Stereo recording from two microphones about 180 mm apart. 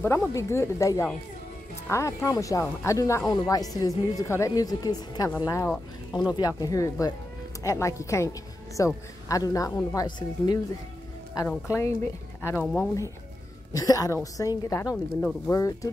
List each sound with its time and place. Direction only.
0.3 s a woman's voice: 15° left (ahead or behind)
12.6 s speech: 5° left (ahead or behind)
13.7 s speech: 20° left (ahead or behind)